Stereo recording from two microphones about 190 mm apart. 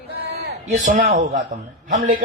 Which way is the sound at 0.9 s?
40° right (ahead or behind).